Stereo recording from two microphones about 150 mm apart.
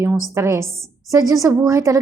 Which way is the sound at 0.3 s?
20° right (ahead or behind).